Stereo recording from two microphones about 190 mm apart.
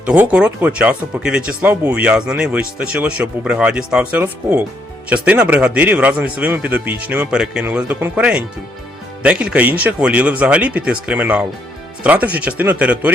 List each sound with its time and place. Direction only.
0.0 s a man's voice: 5° right (ahead or behind)